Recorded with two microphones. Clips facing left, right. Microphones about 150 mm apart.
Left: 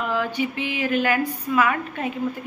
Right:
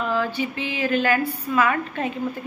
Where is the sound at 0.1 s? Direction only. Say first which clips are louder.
Even; 15° left (ahead or behind).